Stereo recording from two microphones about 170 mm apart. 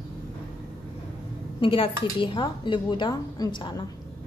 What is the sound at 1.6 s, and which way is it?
A woman's voice, 30° left (ahead or behind).